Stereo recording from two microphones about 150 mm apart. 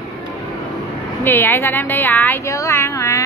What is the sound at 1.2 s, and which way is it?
A woman's voice, 15° left (ahead or behind).